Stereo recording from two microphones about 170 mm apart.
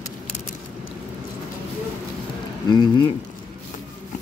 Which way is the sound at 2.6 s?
25° left (ahead or behind).